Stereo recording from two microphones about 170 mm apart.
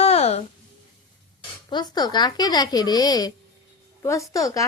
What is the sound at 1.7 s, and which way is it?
A woman's voice, 25° left (ahead or behind).